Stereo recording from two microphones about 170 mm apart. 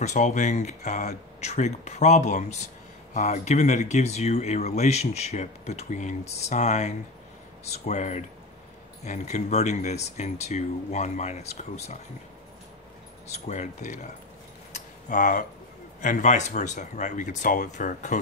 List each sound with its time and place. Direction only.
0.0 s speech: 45° left (ahead or behind)
13.3 s speech: 45° left (ahead or behind)
14.7 s keys jangling: 50° left (ahead or behind)
16.0 s speech: 45° left (ahead or behind)